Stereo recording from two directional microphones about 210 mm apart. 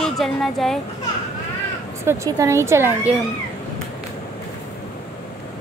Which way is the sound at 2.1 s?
15° right (ahead or behind).